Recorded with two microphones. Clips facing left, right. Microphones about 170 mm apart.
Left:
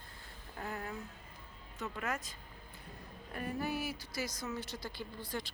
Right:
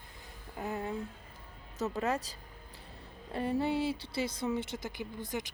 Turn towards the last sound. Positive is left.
turn(degrees=-20)  # may be behind; listen again after turning